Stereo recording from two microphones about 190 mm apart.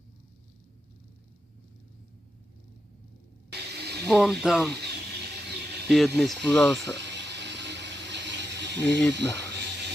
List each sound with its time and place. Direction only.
3.5 s mechanisms: 60° right (ahead or behind)
4.1 s speech: centre (ahead or behind)
4.7 s a sound: 60° right (ahead or behind)
5.9 s speech: centre (ahead or behind)
6.8 s mechanisms: 65° right (ahead or behind)
9.1 s speech: 65° right (ahead or behind)